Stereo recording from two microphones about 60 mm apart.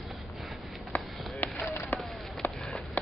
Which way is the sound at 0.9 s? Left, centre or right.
Left.